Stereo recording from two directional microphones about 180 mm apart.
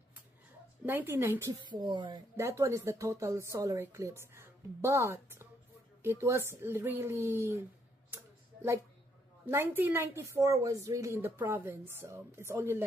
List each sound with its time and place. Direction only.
0.8 s a woman's voice: 10° right (ahead or behind)
9.5 s a woman's voice: 10° right (ahead or behind)